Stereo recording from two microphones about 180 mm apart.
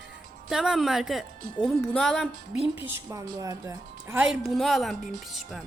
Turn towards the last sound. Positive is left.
turn(degrees=0)  # may be behind; listen again after turning